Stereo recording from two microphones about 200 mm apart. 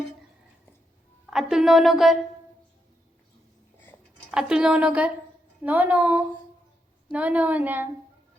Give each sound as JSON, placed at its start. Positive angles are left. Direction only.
{"t": 1.3, "sound": "a woman's voice", "side_deg": 0}
{"t": 4.3, "sound": "a woman's voice", "side_deg": -5}